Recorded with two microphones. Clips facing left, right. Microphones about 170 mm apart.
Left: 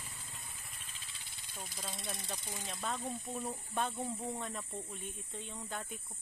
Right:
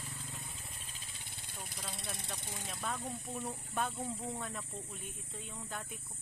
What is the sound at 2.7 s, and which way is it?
Speech, 10° left (ahead or behind).